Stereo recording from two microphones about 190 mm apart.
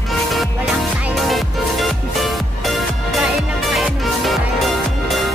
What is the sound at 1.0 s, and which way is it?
Music, centre (ahead or behind).